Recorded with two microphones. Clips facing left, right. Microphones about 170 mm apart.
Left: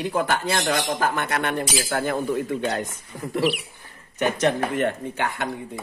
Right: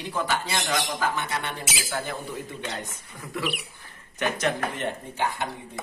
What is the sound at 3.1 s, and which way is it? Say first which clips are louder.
Speech: left 10 dB; 30° left (ahead or behind).